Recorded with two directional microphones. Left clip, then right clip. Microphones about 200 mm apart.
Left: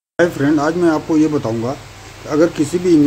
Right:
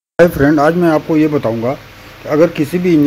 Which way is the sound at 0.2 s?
20° right (ahead or behind).